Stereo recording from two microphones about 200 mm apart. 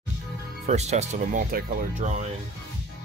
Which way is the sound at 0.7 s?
35° right (ahead or behind).